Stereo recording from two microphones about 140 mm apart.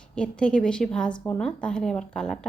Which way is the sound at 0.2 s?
5° left (ahead or behind).